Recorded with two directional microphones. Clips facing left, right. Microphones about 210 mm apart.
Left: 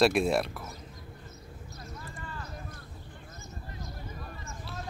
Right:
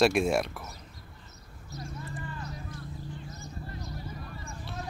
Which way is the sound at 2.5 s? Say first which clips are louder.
Right 3 dB; 55° left (ahead or behind).